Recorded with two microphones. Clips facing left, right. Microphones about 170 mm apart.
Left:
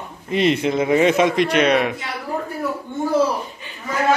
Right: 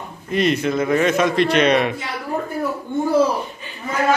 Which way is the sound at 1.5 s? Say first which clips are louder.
Right 1 dB; 10° left (ahead or behind).